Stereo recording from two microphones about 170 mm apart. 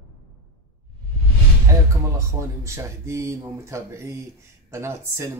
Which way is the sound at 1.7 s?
15° right (ahead or behind).